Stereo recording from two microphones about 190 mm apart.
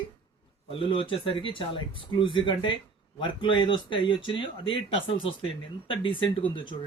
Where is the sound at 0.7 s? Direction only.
30° left (ahead or behind).